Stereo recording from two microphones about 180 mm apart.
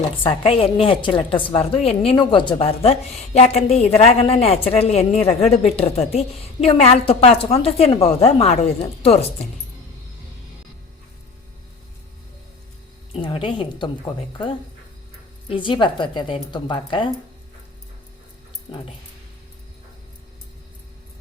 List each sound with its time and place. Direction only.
0.2 s a woman's voice: 30° left (ahead or behind)
13.1 s speech: 30° left (ahead or behind)
15.4 s speech: 30° left (ahead or behind)